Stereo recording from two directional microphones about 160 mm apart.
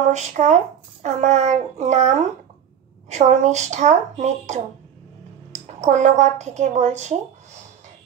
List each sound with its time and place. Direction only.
0.0 s speech: 45° right (ahead or behind)